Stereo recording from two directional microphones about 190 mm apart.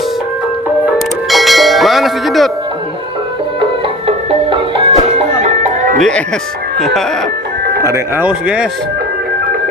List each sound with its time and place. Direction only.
0.9 s music: centre (ahead or behind)
3.6 s music: 30° right (ahead or behind)
6.0 s speech: 5° left (ahead or behind)
7.9 s speech: 15° right (ahead or behind)